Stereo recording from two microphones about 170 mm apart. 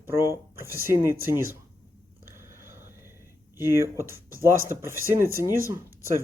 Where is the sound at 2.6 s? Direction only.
15° right (ahead or behind).